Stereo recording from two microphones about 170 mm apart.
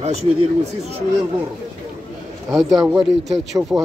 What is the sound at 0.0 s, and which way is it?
Speech, 40° right (ahead or behind).